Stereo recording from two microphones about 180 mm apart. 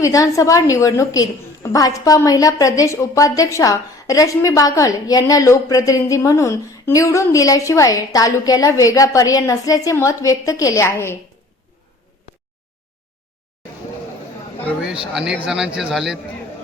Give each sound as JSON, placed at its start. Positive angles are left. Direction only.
{"t": 0.0, "sound": "a woman's voice", "side_deg": 20}
{"t": 15.1, "sound": "speech", "side_deg": -5}